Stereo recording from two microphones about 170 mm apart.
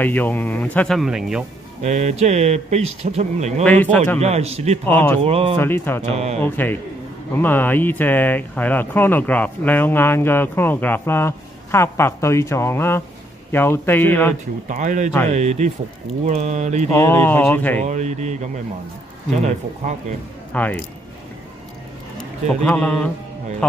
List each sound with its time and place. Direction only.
0.0 s speech: 10° left (ahead or behind)
1.8 s speech: 45° right (ahead or behind)
3.6 s speech: 10° left (ahead or behind)
4.2 s speech: 40° right (ahead or behind)
4.8 s speech: 10° left (ahead or behind)
5.2 s speech: 35° right (ahead or behind)
5.6 s speech: 15° left (ahead or behind)
6.1 s speech: 40° right (ahead or behind)
6.4 s speech: 10° left (ahead or behind)
14.7 s speech: 50° right (ahead or behind)
16.9 s speech: 15° left (ahead or behind)
17.8 s speech: 45° right (ahead or behind)
20.5 s speech: 10° left (ahead or behind)
22.6 s a man's voice: 5° left (ahead or behind)